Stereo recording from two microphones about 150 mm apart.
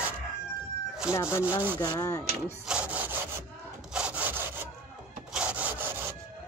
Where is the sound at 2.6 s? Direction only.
10° right (ahead or behind).